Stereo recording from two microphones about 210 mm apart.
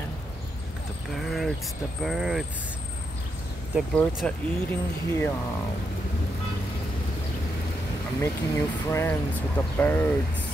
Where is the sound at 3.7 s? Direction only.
5° left (ahead or behind).